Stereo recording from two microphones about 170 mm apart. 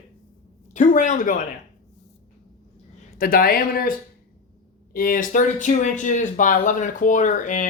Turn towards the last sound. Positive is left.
turn(degrees=50)  # may be behind; listen again after turning